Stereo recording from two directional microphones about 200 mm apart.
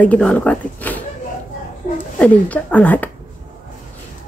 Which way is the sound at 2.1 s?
5° left (ahead or behind).